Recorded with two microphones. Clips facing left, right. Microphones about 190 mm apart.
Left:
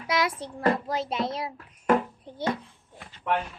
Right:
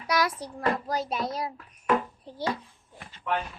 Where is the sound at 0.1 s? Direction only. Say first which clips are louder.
Even; 25° left (ahead or behind).